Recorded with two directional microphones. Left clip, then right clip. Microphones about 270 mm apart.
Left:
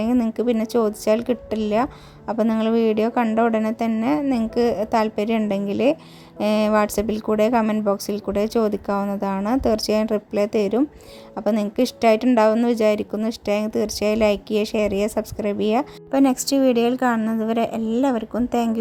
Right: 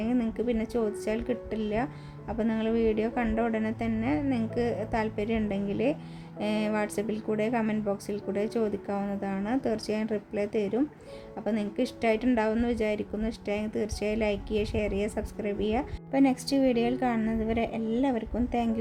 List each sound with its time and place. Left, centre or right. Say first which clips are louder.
0.0 s a woman's voice: left 8 dB; left